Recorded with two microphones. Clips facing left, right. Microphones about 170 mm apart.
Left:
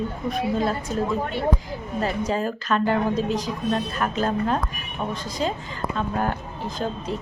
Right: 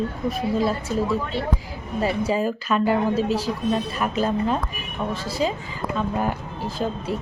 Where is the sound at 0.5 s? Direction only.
5° right (ahead or behind).